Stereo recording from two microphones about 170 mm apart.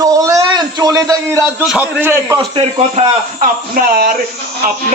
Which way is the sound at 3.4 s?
55° right (ahead or behind).